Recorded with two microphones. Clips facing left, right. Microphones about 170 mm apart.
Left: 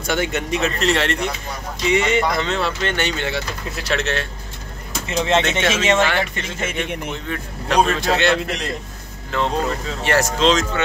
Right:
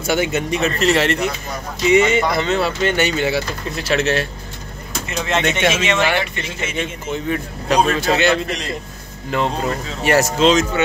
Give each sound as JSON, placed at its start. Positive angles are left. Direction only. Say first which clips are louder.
{"t": 0.0, "sound": "speech", "louder": "right 3 dB", "side_deg": -5}
{"t": 5.0, "sound": "speech", "louder": "left 3 dB", "side_deg": 25}
{"t": 5.4, "sound": "speech", "louder": "right 2 dB", "side_deg": -10}
{"t": 6.4, "sound": "speech", "louder": "right 1 dB", "side_deg": 55}
{"t": 7.2, "sound": "speech", "louder": "right 6 dB", "side_deg": -5}
{"t": 9.3, "sound": "speech", "louder": "right 1 dB", "side_deg": -15}